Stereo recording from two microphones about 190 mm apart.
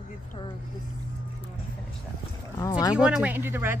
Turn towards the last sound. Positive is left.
turn(degrees=-10)  # may be behind; listen again after turning